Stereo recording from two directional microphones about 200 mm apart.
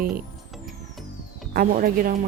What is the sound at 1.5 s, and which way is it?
Speech, 45° right (ahead or behind).